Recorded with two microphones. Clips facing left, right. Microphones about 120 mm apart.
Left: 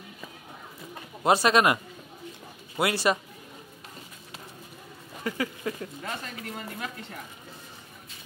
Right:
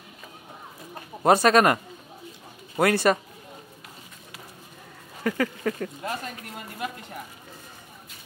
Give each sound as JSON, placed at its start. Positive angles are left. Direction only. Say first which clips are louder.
{"t": 1.2, "sound": "speech", "louder": "right 3 dB", "side_deg": -50}
{"t": 2.8, "sound": "speech", "louder": "right 4 dB", "side_deg": -50}
{"t": 5.2, "sound": "speech", "louder": "right 5 dB", "side_deg": -60}